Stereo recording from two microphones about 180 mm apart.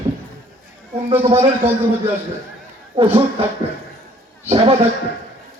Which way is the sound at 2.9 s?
30° right (ahead or behind).